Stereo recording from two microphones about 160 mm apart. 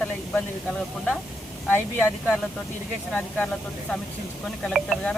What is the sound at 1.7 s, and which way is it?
Speech, 15° left (ahead or behind).